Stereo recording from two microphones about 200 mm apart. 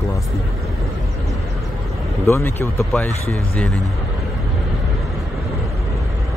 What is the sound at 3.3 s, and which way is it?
Speech, centre (ahead or behind).